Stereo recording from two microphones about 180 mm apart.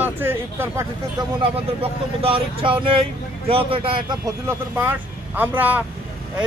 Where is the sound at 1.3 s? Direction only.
30° right (ahead or behind).